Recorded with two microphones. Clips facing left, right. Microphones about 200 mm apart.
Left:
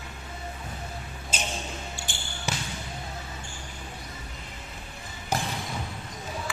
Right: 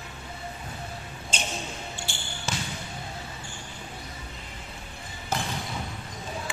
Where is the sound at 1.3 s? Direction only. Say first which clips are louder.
Even; 10° left (ahead or behind).